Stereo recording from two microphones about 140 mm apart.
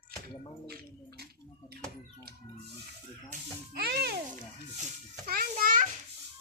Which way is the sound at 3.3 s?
90° right.